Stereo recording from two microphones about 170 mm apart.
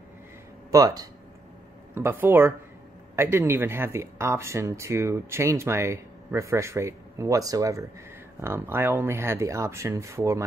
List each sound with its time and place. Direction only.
0.7 s speech: 20° right (ahead or behind)